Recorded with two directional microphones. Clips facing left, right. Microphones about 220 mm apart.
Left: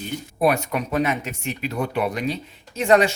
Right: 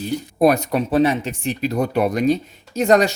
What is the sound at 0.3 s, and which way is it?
Speech, 40° right (ahead or behind).